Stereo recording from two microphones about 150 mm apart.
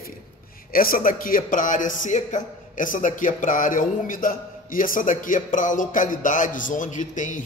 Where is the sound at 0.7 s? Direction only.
70° left (ahead or behind).